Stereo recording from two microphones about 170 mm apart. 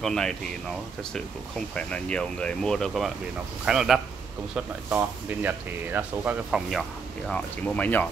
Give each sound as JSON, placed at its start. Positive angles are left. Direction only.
{"t": 0.0, "sound": "speech", "side_deg": 5}
{"t": 1.8, "sound": "speech", "side_deg": 5}
{"t": 7.2, "sound": "speech", "side_deg": 10}